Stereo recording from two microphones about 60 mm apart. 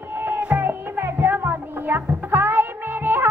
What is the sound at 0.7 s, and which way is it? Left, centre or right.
Music, right.